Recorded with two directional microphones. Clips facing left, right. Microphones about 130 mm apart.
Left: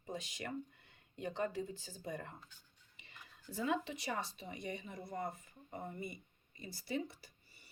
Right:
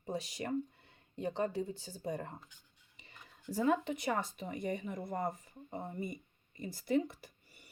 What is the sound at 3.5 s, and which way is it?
Speech, 45° right (ahead or behind).